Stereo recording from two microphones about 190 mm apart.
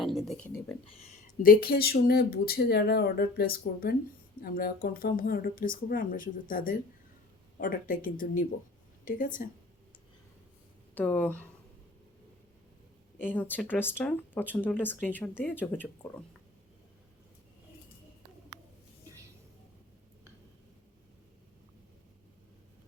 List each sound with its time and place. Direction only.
0.0 s speech: centre (ahead or behind)
1.4 s speech: 50° left (ahead or behind)
10.9 s speech: 5° left (ahead or behind)
13.2 s speech: 10° left (ahead or behind)